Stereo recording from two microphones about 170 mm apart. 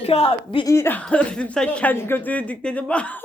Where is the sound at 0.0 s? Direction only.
40° left (ahead or behind).